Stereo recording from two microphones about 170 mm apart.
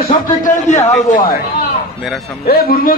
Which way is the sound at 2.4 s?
60° left (ahead or behind).